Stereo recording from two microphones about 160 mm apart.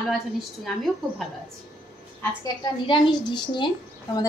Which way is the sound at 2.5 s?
25° left (ahead or behind).